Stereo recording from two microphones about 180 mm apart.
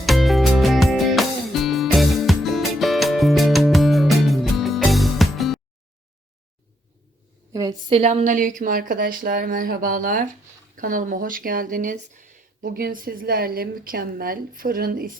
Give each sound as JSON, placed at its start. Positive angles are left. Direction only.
{"t": 0.0, "sound": "music", "side_deg": 0}
{"t": 7.5, "sound": "speech", "side_deg": -20}